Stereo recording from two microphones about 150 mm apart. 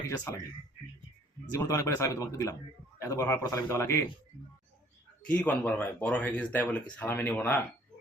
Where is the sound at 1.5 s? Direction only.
20° left (ahead or behind).